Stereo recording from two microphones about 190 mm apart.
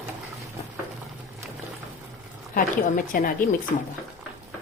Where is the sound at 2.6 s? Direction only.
45° left (ahead or behind).